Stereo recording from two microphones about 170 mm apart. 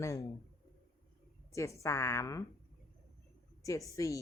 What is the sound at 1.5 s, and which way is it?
Speech, 15° left (ahead or behind).